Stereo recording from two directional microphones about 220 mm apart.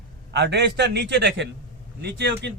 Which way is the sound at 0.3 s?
50° right (ahead or behind).